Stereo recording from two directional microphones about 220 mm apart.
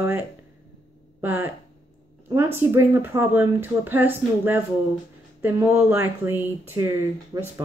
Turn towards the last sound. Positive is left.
turn(degrees=-10)  # may be behind; listen again after turning